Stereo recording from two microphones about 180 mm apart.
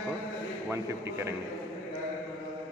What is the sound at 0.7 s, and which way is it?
Speech, 15° right (ahead or behind).